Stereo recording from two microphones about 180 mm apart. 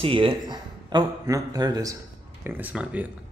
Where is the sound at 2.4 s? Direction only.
10° right (ahead or behind).